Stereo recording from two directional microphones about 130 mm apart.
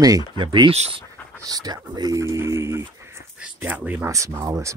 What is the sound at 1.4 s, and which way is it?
Speech, 30° right (ahead or behind).